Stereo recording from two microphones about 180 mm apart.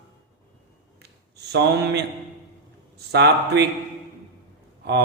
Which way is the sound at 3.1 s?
70° right (ahead or behind).